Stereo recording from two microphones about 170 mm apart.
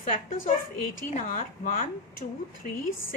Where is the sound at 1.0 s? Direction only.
50° left (ahead or behind).